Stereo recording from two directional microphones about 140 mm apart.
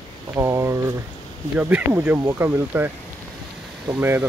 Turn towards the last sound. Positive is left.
turn(degrees=-15)  # may be behind; listen again after turning